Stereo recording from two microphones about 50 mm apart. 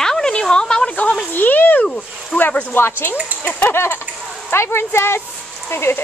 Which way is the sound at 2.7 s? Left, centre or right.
Left.